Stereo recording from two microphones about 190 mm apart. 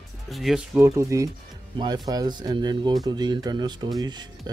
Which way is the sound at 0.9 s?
15° right (ahead or behind).